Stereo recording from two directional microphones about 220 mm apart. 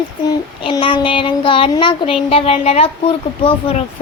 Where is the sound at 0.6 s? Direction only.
25° left (ahead or behind).